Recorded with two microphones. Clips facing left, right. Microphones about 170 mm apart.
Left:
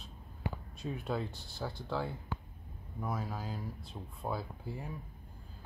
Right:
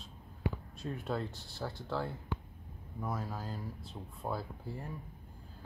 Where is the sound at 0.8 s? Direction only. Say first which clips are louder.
Even; centre (ahead or behind).